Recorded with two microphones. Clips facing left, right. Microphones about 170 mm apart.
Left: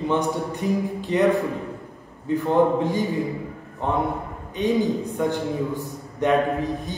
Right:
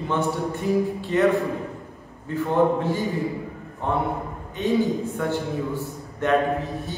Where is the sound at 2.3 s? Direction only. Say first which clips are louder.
Left 2 dB; 15° left (ahead or behind).